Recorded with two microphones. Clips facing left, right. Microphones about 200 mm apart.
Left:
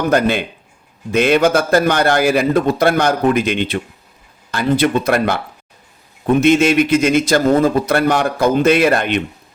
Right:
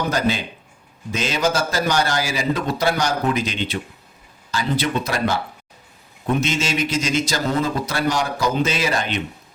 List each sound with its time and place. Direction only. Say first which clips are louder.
0.1 s a man's voice: left 6 dB; 60° left (ahead or behind)